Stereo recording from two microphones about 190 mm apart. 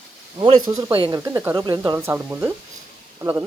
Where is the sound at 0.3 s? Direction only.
25° right (ahead or behind).